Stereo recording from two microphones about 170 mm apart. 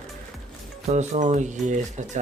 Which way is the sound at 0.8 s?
45° right (ahead or behind).